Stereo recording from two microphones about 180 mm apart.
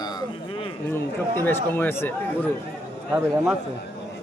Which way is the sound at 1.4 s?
10° left (ahead or behind).